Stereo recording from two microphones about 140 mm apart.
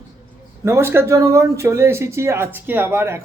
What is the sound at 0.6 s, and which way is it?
Speech, 20° right (ahead or behind).